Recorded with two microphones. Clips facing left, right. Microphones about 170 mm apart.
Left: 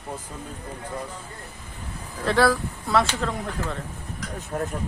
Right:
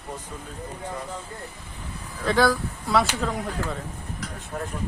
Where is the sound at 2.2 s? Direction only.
Centre (ahead or behind).